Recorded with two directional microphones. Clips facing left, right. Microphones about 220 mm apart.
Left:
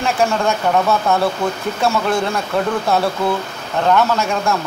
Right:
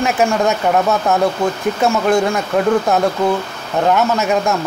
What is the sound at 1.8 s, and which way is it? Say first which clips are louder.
Speech: right 3 dB; 15° right (ahead or behind).